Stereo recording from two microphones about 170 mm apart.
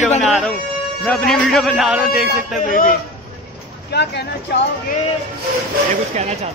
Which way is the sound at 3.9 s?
80° left.